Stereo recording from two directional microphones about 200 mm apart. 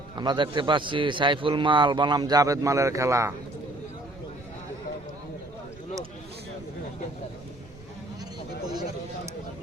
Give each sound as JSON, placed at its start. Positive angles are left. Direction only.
{"t": 0.2, "sound": "a man's voice", "side_deg": -20}